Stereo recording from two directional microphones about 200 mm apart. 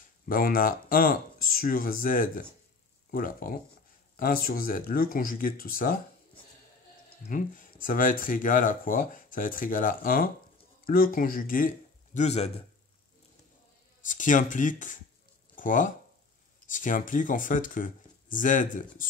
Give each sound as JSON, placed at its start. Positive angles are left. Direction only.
{"t": 0.3, "sound": "speech", "side_deg": 45}
{"t": 7.2, "sound": "speech", "side_deg": 40}
{"t": 14.0, "sound": "speech", "side_deg": 40}